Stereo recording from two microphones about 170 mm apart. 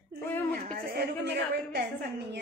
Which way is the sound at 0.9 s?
80° right.